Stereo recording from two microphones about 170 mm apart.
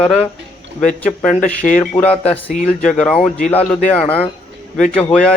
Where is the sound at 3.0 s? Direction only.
5° left (ahead or behind).